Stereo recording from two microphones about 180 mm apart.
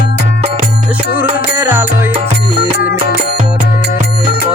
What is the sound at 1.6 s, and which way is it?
Music, 15° right (ahead or behind).